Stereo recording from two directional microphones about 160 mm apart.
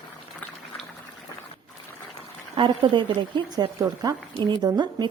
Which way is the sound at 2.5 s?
30° right (ahead or behind).